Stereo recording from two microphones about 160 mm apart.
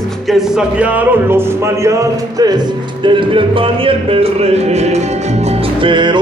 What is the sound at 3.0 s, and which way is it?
Music, 30° right (ahead or behind).